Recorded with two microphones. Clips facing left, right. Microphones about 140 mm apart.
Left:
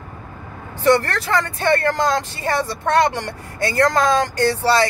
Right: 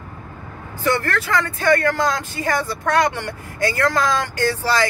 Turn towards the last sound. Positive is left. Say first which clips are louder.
# left 3 dB
turn(degrees=30)  # may be behind; listen again after turning